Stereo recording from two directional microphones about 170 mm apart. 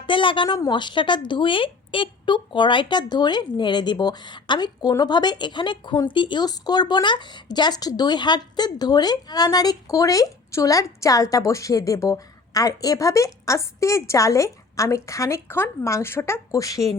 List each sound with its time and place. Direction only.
0.0 s speech: 30° left (ahead or behind)